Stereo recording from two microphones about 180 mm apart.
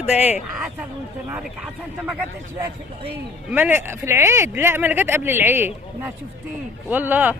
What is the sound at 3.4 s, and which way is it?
Speech, 10° right (ahead or behind).